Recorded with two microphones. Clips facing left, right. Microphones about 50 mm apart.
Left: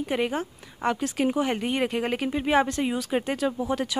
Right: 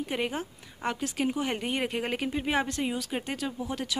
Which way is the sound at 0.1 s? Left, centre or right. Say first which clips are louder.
Left 7 dB; centre.